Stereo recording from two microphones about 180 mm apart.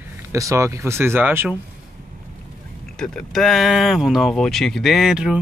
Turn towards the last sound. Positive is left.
turn(degrees=-5)  # may be behind; listen again after turning